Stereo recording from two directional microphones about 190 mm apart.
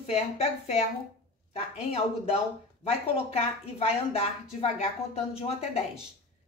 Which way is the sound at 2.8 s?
30° left (ahead or behind).